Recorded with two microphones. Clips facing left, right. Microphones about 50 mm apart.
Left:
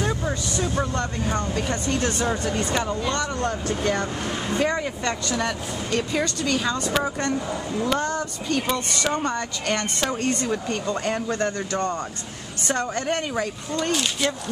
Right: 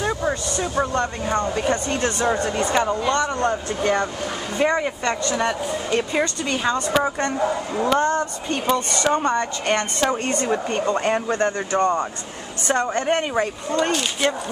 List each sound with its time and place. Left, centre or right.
0.0 s speech: right
3.3 s speech: right
7.3 s speech: right
8.0 s speech: right
8.7 s speech: centre
10.2 s speech: right; by 14.4 s centre